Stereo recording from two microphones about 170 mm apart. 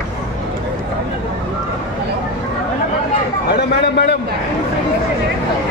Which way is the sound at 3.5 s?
80° left.